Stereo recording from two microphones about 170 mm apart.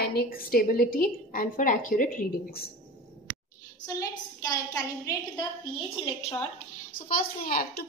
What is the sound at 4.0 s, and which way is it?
Speech, 20° left (ahead or behind).